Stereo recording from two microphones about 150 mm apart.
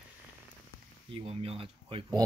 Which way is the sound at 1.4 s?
40° right (ahead or behind).